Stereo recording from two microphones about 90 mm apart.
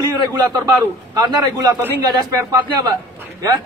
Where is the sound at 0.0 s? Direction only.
40° right (ahead or behind).